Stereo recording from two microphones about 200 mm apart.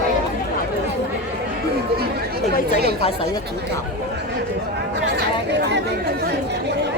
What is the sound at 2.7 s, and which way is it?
Chatter, 50° right (ahead or behind).